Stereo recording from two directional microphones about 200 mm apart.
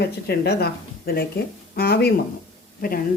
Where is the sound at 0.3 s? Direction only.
55° left (ahead or behind).